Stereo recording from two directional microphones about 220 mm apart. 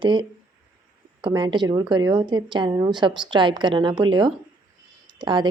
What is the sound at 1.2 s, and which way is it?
Speech, 20° right (ahead or behind).